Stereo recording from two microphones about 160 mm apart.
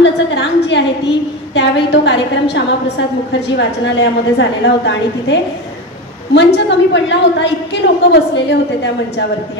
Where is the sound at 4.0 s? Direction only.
90° left.